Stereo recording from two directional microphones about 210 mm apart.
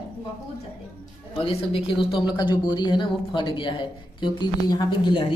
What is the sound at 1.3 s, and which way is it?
A man's voice, 30° left (ahead or behind).